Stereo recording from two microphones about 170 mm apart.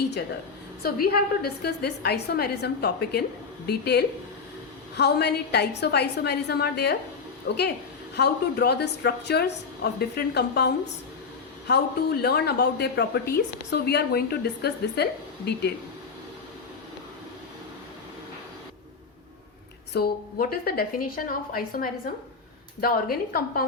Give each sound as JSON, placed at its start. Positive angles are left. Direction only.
{"t": 0.8, "sound": "a woman's voice", "side_deg": 65}
{"t": 11.7, "sound": "a woman's voice", "side_deg": 70}
{"t": 19.9, "sound": "a woman's voice", "side_deg": 65}